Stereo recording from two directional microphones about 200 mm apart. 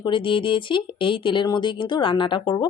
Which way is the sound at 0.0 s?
25° left (ahead or behind).